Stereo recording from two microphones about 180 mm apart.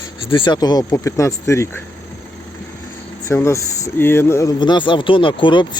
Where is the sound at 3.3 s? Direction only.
15° left (ahead or behind).